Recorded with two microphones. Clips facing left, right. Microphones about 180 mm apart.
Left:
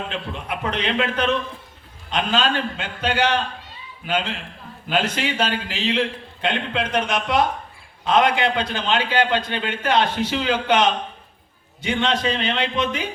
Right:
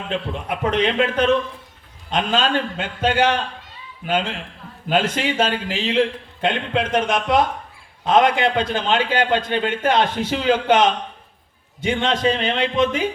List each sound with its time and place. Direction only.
0.4 s a man's voice: 45° right (ahead or behind)